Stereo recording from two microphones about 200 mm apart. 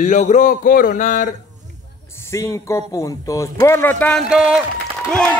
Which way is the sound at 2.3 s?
15° left (ahead or behind).